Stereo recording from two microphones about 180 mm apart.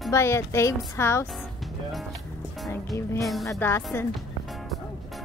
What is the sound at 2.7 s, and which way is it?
Speech, 15° left (ahead or behind).